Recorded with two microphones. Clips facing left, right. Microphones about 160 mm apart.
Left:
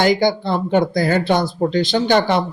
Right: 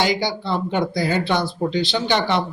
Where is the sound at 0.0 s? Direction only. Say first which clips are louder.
Left 6 dB; 50° left (ahead or behind).